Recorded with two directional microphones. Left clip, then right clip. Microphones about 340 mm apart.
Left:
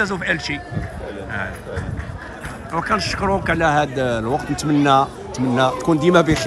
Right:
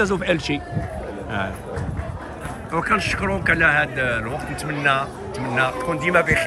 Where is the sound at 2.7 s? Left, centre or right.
Centre.